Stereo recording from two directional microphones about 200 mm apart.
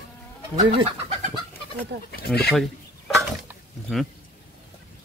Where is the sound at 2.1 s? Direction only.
50° left (ahead or behind).